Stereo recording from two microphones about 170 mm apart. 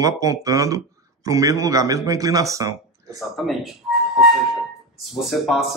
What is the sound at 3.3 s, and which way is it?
Speech, centre (ahead or behind).